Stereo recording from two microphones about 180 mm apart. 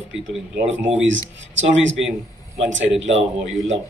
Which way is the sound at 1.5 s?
90° right.